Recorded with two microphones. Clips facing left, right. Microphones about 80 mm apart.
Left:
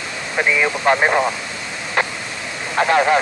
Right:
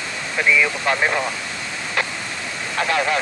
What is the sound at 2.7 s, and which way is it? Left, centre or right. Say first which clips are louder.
Speech: left 6 dB; left.